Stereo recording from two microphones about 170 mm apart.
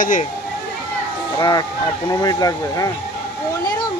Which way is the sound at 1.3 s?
25° left (ahead or behind).